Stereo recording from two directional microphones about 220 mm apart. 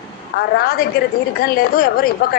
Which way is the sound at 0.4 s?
45° left (ahead or behind).